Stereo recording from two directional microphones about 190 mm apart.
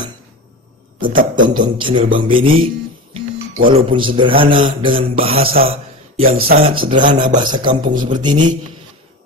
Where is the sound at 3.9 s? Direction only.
25° right (ahead or behind).